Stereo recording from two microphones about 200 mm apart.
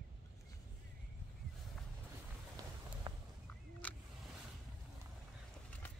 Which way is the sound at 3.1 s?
25° right (ahead or behind).